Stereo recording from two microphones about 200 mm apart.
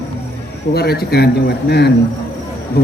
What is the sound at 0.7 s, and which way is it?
Speech, 50° left (ahead or behind).